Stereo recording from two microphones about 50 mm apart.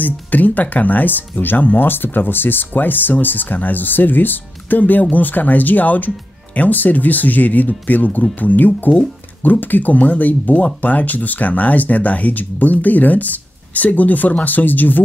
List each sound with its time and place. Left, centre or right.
0.0 s speech: left